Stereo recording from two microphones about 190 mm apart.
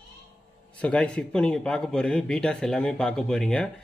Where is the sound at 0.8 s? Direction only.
5° left (ahead or behind).